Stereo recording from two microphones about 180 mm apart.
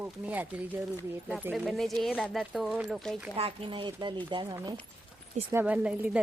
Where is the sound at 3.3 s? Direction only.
30° right (ahead or behind).